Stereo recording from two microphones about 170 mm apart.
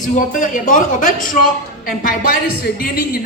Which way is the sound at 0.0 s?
50° left (ahead or behind).